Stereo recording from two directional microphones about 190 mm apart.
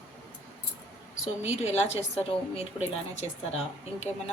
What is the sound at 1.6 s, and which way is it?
Speech, 35° left (ahead or behind).